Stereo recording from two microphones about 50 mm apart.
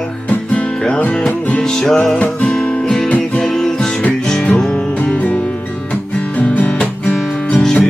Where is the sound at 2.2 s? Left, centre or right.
Left.